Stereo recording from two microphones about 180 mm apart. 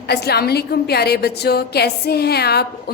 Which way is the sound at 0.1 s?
65° left (ahead or behind).